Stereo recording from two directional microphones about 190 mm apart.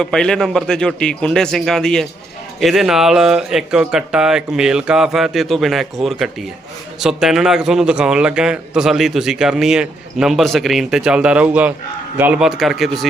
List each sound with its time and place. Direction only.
0.0 s a man's voice: 5° left (ahead or behind)